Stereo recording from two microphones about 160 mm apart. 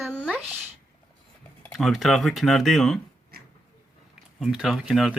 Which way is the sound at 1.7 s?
Centre (ahead or behind).